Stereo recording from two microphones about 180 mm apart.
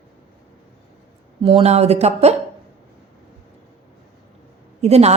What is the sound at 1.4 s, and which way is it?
Speech, 35° right (ahead or behind).